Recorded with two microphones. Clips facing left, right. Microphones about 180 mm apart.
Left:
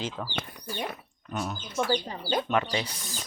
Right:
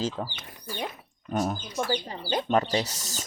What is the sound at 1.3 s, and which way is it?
Speech, 45° right (ahead or behind).